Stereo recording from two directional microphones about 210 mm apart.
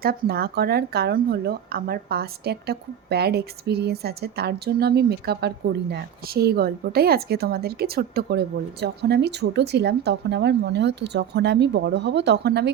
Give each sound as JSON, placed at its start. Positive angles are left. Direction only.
{"t": 0.0, "sound": "speech", "side_deg": -45}